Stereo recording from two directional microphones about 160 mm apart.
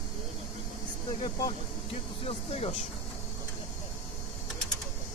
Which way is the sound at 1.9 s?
35° left (ahead or behind).